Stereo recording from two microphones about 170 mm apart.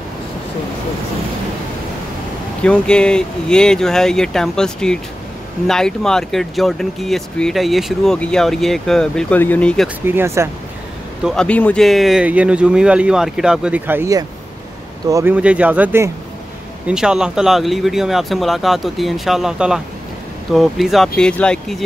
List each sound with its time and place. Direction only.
2.6 s speech: 5° left (ahead or behind)
10.0 s speech: 15° right (ahead or behind)
11.2 s speech: 5° left (ahead or behind); by 15.3 s 20° right (ahead or behind)
15.3 s speech: 10° right (ahead or behind)